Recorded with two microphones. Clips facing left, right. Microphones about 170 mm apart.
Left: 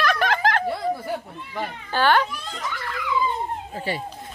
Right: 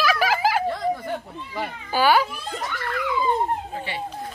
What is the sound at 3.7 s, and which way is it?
Speech, 40° left (ahead or behind).